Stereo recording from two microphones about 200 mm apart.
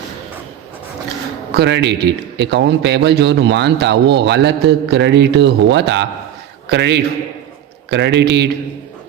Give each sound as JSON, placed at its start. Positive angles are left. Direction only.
{"t": 1.5, "sound": "a man's voice", "side_deg": -60}